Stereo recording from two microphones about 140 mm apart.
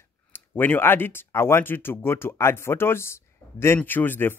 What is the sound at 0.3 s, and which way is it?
Speech, 15° left (ahead or behind).